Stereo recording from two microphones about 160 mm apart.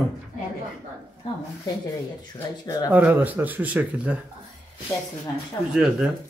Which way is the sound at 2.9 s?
10° right (ahead or behind).